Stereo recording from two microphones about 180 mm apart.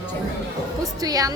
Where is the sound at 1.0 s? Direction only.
20° right (ahead or behind).